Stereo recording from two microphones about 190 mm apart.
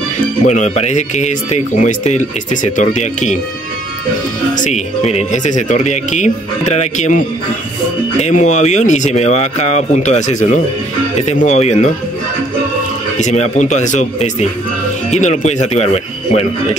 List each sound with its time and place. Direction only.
0.5 s speech: 40° left (ahead or behind)
4.6 s speech: 40° left (ahead or behind)
13.2 s speech: 40° left (ahead or behind)